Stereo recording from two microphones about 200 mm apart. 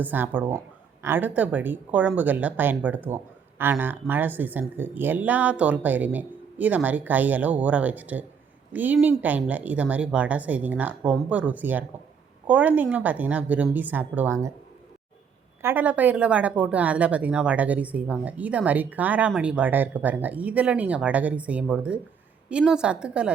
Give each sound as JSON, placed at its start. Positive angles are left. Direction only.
{"t": 0.0, "sound": "speech", "side_deg": -10}
{"t": 15.6, "sound": "a woman's voice", "side_deg": -10}